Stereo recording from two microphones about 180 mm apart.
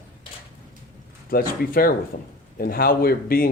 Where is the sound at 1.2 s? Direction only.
55° left (ahead or behind).